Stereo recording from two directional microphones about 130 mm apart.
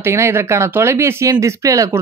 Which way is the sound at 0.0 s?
20° right (ahead or behind).